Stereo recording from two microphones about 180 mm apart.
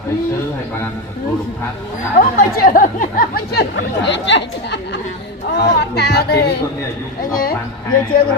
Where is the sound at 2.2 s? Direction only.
50° left (ahead or behind); by 5.0 s 80° left.